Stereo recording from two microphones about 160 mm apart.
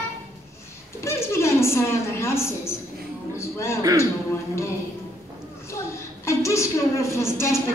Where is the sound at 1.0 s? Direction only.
15° left (ahead or behind).